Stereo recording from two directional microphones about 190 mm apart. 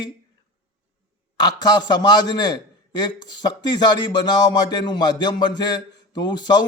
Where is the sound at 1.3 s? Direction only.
20° left (ahead or behind).